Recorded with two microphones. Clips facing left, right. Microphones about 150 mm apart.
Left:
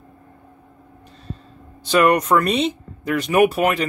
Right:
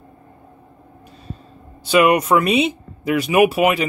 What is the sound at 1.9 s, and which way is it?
Speech, 10° right (ahead or behind).